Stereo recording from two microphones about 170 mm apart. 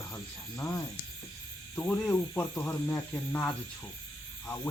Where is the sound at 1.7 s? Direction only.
10° left (ahead or behind).